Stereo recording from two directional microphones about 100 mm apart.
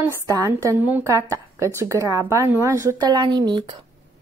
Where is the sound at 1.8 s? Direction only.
30° right (ahead or behind).